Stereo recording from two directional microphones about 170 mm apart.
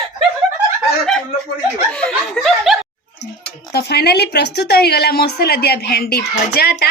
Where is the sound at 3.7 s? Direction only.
75° left (ahead or behind).